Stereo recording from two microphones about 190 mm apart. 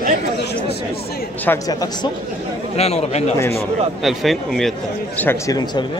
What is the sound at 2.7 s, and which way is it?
Speech, 35° left (ahead or behind).